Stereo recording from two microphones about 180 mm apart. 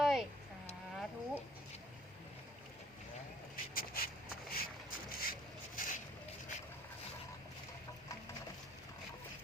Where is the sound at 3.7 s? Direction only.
55° left (ahead or behind).